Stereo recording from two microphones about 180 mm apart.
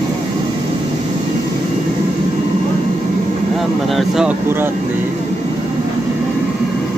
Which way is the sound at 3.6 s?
Centre (ahead or behind).